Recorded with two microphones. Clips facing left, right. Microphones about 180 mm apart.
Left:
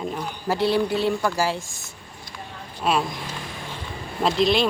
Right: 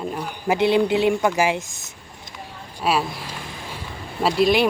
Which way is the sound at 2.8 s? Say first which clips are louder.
Right 1 dB; 5° right (ahead or behind).